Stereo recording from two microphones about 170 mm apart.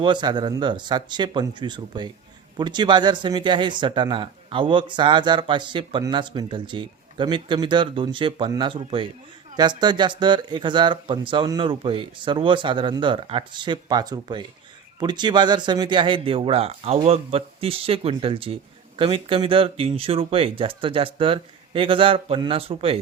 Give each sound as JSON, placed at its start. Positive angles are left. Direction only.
{"t": 0.0, "sound": "speech", "side_deg": -25}